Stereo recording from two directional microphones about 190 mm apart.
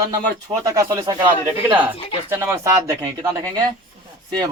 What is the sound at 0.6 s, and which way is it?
Speech, 15° right (ahead or behind).